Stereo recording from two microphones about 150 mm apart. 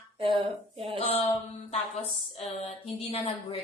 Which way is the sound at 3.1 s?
40° left (ahead or behind).